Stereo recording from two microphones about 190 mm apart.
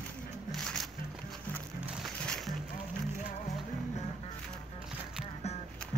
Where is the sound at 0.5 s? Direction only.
Centre (ahead or behind).